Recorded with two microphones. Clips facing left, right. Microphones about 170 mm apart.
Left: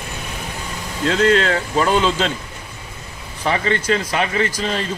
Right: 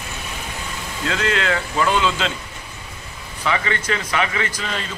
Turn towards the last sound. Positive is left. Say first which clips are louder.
# left 5 dB
turn(degrees=35)  # may be behind; listen again after turning